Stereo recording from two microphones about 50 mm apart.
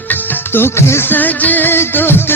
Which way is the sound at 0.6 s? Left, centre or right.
Left.